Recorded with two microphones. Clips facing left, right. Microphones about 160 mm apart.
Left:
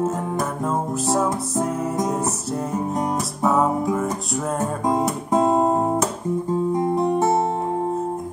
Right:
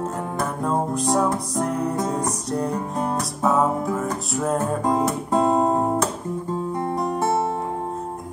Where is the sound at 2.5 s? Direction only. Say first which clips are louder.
Even; 5° left (ahead or behind).